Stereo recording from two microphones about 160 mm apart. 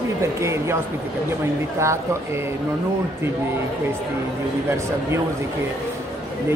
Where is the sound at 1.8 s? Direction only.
15° right (ahead or behind).